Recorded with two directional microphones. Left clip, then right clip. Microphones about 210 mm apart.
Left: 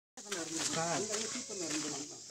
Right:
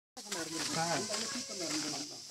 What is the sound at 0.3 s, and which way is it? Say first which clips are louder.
Speech: even; 40° right (ahead or behind).